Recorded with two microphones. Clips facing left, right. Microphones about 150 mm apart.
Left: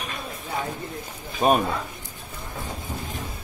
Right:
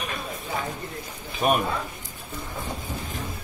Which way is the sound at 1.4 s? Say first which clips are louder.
Left 3 dB; 30° left (ahead or behind).